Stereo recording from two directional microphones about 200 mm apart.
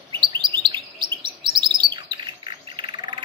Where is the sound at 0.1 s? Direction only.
25° right (ahead or behind).